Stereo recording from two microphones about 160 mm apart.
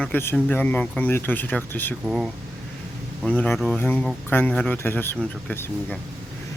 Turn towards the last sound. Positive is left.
turn(degrees=10)  # may be behind; listen again after turning